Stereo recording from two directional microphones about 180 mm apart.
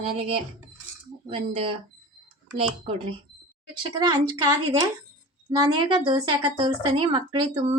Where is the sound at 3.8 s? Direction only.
25° right (ahead or behind).